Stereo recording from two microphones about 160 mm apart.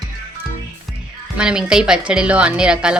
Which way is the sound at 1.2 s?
5° right (ahead or behind).